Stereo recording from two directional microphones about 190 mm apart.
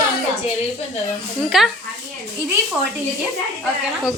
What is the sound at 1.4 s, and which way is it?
Speech, centre (ahead or behind).